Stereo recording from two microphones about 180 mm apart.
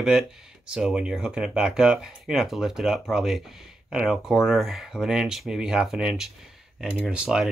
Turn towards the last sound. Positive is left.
turn(degrees=-5)  # may be behind; listen again after turning